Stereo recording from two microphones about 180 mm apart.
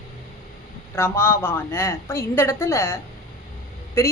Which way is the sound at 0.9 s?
15° left (ahead or behind).